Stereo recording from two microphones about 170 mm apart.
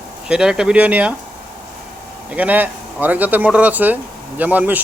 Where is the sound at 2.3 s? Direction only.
10° right (ahead or behind).